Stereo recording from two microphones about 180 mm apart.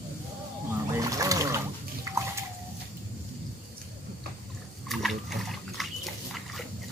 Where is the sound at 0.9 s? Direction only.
20° right (ahead or behind).